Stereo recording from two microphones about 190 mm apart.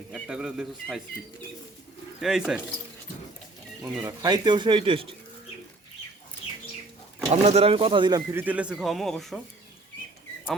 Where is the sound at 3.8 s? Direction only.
15° right (ahead or behind).